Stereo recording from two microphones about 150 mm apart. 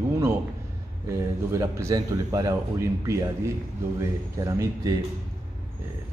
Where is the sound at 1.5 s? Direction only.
20° right (ahead or behind).